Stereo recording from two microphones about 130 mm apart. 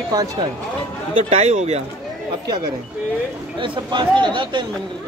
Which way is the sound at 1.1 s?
60° right (ahead or behind).